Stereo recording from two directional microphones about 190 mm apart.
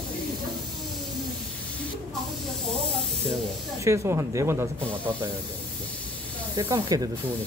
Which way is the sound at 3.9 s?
15° right (ahead or behind).